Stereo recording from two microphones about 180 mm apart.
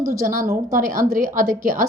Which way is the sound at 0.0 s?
45° right (ahead or behind).